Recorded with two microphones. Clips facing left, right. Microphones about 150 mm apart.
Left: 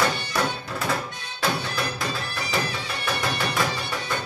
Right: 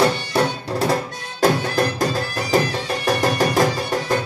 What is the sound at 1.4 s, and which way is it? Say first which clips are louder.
Music: right 9 dB; 45° right (ahead or behind).